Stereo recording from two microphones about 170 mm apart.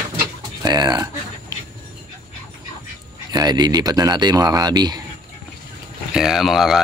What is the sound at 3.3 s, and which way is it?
Speech, 25° right (ahead or behind).